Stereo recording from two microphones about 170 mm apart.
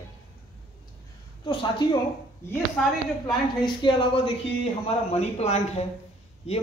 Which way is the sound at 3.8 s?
30° left (ahead or behind).